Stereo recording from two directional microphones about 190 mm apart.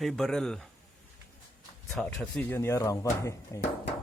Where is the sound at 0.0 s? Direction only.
Centre (ahead or behind).